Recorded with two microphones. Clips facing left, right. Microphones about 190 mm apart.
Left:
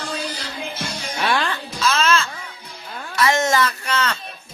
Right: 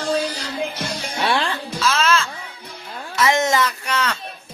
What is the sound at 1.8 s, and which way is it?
Music, 5° right (ahead or behind).